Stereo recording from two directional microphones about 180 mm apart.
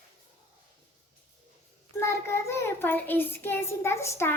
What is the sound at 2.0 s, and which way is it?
Child singing, 15° left (ahead or behind).